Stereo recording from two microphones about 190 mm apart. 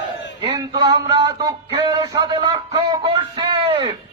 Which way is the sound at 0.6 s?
20° right (ahead or behind).